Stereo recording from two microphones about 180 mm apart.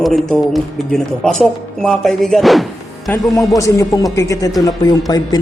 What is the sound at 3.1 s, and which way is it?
Speech, 20° left (ahead or behind).